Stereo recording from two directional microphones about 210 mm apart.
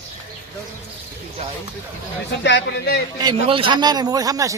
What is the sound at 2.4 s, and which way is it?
Speech, 55° left (ahead or behind).